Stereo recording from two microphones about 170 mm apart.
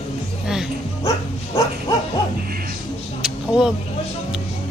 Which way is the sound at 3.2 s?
5° right (ahead or behind).